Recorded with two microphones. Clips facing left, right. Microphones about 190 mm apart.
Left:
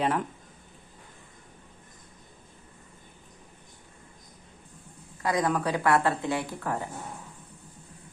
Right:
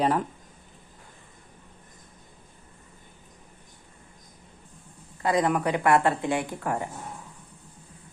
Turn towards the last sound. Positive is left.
turn(degrees=-15)  # may be behind; listen again after turning